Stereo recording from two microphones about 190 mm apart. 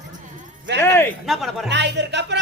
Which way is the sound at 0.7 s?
10° left (ahead or behind).